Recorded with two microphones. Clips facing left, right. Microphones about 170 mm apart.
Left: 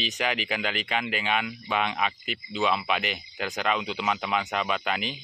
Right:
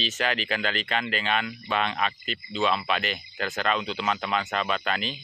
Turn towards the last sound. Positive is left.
turn(degrees=15)  # may be behind; listen again after turning